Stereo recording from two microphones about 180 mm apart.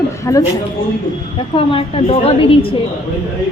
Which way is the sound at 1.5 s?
30° left (ahead or behind).